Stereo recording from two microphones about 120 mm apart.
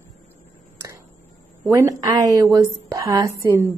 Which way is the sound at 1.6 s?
30° right (ahead or behind).